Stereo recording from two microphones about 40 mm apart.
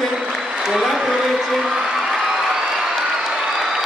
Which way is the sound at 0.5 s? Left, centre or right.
Centre.